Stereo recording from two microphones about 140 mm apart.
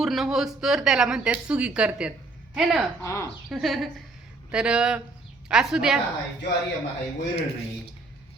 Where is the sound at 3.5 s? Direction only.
Centre (ahead or behind).